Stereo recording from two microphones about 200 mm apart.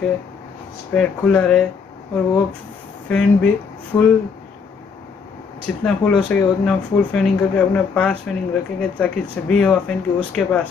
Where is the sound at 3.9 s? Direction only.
15° left (ahead or behind).